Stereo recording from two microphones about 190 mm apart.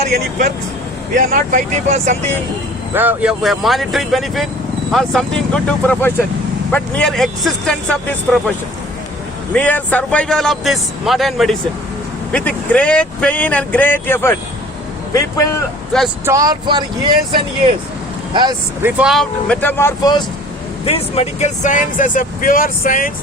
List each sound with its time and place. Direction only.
1.1 s speech: 45° right (ahead or behind)
2.9 s a man's voice: 10° right (ahead or behind)
9.6 s a man's voice: 10° left (ahead or behind)
16.2 s speech: 15° right (ahead or behind)
18.8 s a man's voice: 10° right (ahead or behind); by 20.2 s 15° left (ahead or behind)
20.8 s speech: 30° left (ahead or behind)